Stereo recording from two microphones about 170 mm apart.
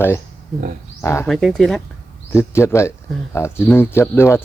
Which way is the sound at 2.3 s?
15° left (ahead or behind).